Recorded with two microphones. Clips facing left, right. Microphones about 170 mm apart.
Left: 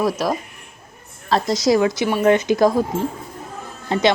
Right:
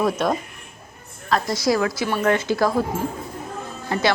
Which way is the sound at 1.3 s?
20° left (ahead or behind).